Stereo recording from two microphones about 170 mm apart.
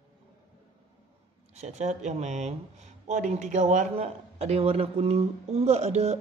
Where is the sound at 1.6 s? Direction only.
40° right (ahead or behind).